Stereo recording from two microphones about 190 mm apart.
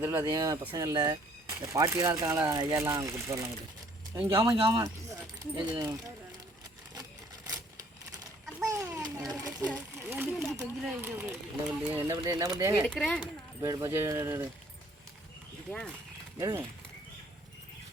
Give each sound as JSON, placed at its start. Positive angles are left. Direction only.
{"t": 0.0, "sound": "speech", "side_deg": -15}
{"t": 4.4, "sound": "speech", "side_deg": -25}
{"t": 8.7, "sound": "children playing", "side_deg": -15}
{"t": 9.6, "sound": "speech", "side_deg": -10}
{"t": 12.8, "sound": "speech", "side_deg": 5}
{"t": 13.6, "sound": "speech", "side_deg": -15}
{"t": 16.4, "sound": "speech", "side_deg": -15}